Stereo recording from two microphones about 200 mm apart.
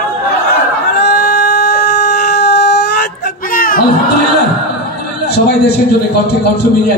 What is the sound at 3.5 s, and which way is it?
Music, 45° left (ahead or behind).